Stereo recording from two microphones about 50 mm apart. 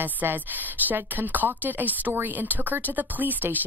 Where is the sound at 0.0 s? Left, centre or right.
Right.